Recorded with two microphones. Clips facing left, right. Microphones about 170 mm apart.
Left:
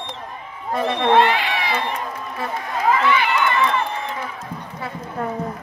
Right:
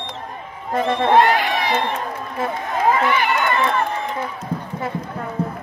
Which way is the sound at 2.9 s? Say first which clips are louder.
Even; 45° right (ahead or behind).